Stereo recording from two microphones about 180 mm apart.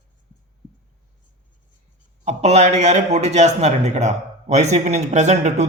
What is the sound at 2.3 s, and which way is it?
A man's voice, 40° right (ahead or behind).